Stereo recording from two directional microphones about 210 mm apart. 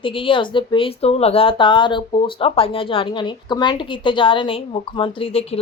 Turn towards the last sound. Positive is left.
turn(degrees=25)  # may be behind; listen again after turning